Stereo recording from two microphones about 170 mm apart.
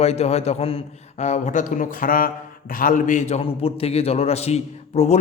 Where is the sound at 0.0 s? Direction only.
40° left (ahead or behind).